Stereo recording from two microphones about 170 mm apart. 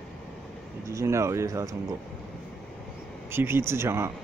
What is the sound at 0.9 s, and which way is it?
Speech, 15° right (ahead or behind).